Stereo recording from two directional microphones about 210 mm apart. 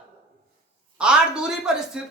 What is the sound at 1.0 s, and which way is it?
A woman's voice, 5° right (ahead or behind).